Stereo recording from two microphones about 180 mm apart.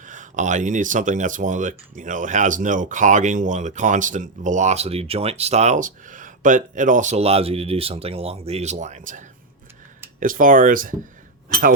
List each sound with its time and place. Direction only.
0.0 s speech: 45° right (ahead or behind)